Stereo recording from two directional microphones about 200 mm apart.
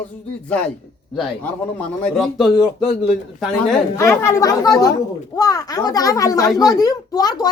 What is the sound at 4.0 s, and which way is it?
A child's voice, 15° left (ahead or behind).